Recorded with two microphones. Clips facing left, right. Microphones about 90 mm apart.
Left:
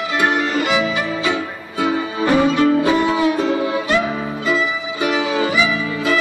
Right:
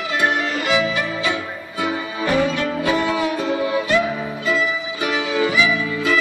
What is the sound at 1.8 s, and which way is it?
Music, 30° left (ahead or behind).